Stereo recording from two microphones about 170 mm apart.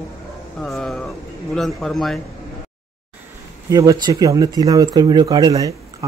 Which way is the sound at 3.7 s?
20° right (ahead or behind).